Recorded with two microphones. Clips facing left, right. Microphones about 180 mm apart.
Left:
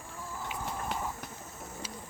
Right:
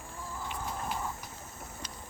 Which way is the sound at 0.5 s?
5° left (ahead or behind).